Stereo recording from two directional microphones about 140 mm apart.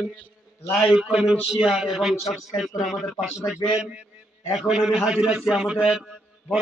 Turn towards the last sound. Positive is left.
turn(degrees=-5)  # may be behind; listen again after turning